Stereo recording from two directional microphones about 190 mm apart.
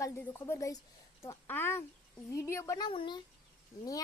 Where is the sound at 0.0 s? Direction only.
15° left (ahead or behind).